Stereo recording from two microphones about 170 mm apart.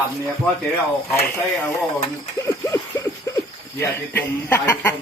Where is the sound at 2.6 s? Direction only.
20° left (ahead or behind).